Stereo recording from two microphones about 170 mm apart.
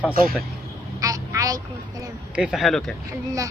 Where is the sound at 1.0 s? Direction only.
20° right (ahead or behind).